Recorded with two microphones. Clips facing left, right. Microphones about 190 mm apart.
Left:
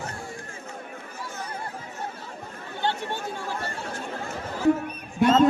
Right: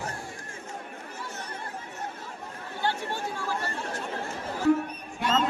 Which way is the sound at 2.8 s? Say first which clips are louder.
Left 2 dB; 25° left (ahead or behind).